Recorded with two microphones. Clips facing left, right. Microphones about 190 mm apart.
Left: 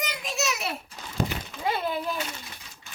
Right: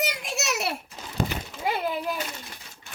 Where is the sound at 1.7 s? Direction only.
15° right (ahead or behind).